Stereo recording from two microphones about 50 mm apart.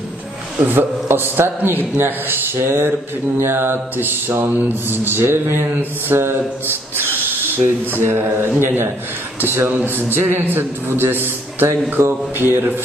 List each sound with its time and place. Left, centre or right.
0.7 s mantra: right
7.2 s speech: right
8.5 s mantra: right
9.8 s mantra: right